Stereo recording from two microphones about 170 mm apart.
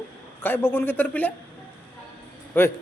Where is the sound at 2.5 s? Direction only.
10° left (ahead or behind).